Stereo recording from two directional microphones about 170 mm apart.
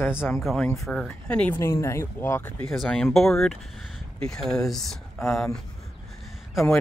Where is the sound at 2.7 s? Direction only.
Centre (ahead or behind).